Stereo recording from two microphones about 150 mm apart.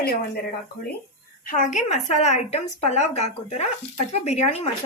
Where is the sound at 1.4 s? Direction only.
60° left (ahead or behind).